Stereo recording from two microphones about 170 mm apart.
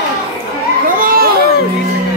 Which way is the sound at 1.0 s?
60° right (ahead or behind).